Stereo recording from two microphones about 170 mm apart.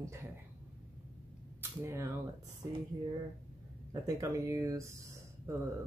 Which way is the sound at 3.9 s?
20° right (ahead or behind).